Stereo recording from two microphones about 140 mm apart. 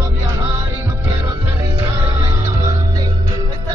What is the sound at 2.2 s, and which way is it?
Music, 25° right (ahead or behind).